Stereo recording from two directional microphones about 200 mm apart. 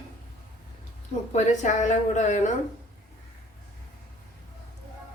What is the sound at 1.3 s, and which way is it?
A woman's voice, 35° left (ahead or behind).